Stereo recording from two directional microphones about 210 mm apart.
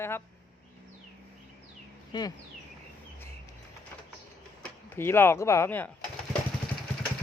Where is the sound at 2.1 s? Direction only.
20° left (ahead or behind).